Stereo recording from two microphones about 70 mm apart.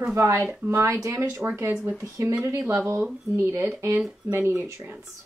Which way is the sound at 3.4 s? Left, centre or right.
Right.